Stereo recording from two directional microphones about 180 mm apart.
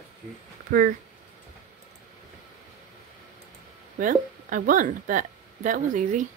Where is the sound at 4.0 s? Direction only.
50° right (ahead or behind).